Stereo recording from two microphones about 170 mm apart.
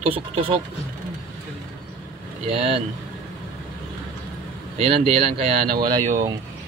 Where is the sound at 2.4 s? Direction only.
35° right (ahead or behind).